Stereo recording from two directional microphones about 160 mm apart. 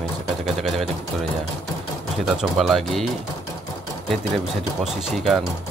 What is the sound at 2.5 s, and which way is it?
Speech, centre (ahead or behind).